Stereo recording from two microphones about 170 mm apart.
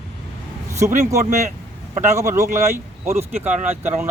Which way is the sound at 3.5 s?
45° right (ahead or behind).